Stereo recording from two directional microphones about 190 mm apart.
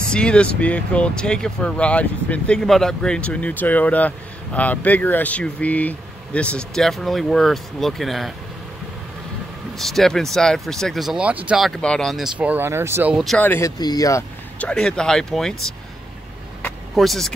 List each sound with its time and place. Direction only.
0.1 s speech: 5° left (ahead or behind)
9.8 s speech: centre (ahead or behind)
13.2 s speech: 5° left (ahead or behind)
14.6 s speech: 5° left (ahead or behind)
16.6 s vehicle: centre (ahead or behind)